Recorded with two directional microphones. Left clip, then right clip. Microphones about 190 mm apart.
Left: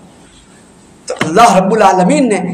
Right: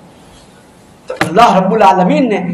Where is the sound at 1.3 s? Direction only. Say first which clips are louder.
Left 1 dB; 35° left (ahead or behind).